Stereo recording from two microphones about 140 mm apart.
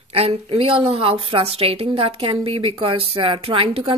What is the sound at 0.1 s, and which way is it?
A woman's voice, 45° right (ahead or behind).